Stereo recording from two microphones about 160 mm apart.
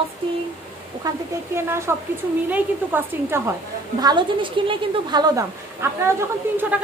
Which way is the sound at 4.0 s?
30° right (ahead or behind).